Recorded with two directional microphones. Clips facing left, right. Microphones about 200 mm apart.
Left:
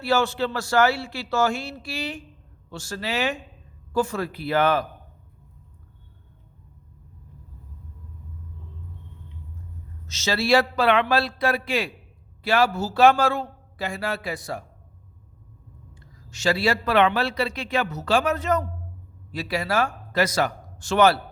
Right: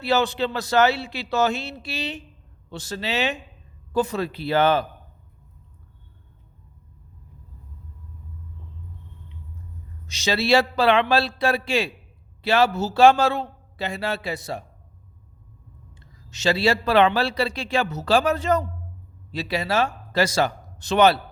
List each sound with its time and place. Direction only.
0.0 s a man's voice: 20° right (ahead or behind)
10.1 s a man's voice: 15° right (ahead or behind)
16.0 s a man's voice: 20° right (ahead or behind)